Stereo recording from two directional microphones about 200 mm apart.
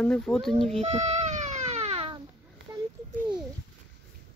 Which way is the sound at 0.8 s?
35° right (ahead or behind).